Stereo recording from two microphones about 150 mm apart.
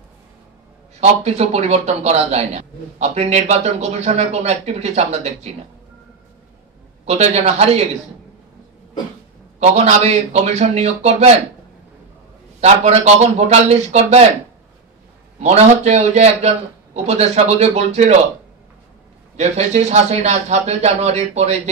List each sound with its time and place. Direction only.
1.0 s a man's voice: 45° right (ahead or behind)
7.1 s a man's voice: 45° right (ahead or behind)
9.6 s a man's voice: 45° right (ahead or behind)
12.5 s a man's voice: 45° right (ahead or behind)
15.4 s a man's voice: 45° right (ahead or behind)
19.3 s a man's voice: 45° right (ahead or behind)